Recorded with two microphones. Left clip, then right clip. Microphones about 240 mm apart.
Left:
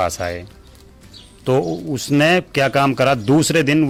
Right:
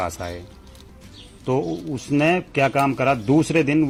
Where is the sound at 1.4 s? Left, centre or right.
Left.